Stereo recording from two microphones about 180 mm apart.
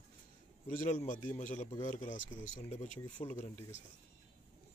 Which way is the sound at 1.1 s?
45° left (ahead or behind).